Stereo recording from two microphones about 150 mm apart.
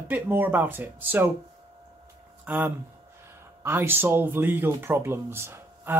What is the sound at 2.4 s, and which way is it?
Speech, 10° right (ahead or behind).